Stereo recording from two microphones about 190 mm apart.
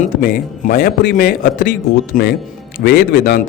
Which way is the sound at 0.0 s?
45° left (ahead or behind).